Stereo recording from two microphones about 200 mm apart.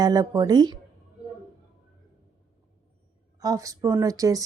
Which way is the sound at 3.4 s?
15° right (ahead or behind).